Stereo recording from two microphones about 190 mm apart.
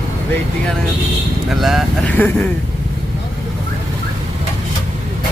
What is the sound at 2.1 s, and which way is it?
Speech, 10° left (ahead or behind).